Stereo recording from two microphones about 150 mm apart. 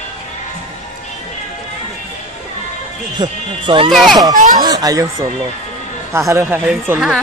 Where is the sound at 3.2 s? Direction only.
35° right (ahead or behind).